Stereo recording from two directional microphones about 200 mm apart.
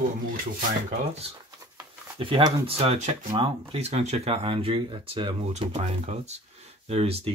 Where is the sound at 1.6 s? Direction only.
20° right (ahead or behind).